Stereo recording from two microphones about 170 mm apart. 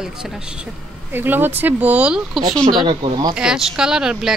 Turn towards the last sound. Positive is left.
turn(degrees=-5)  # may be behind; listen again after turning